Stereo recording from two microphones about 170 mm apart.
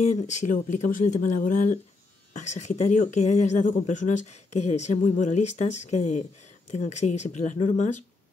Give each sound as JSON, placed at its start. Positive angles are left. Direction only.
{"t": 0.0, "sound": "speech", "side_deg": 45}